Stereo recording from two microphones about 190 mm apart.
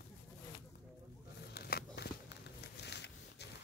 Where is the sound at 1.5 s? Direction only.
55° left (ahead or behind).